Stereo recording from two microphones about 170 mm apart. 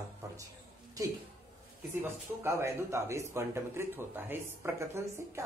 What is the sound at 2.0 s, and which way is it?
Speech, 15° right (ahead or behind).